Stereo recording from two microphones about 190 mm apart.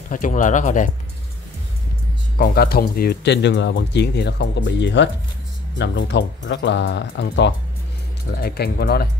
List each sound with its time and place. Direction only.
0.1 s speech: 40° left (ahead or behind)
2.3 s speech: 55° left (ahead or behind)
8.4 s speech: 55° left (ahead or behind)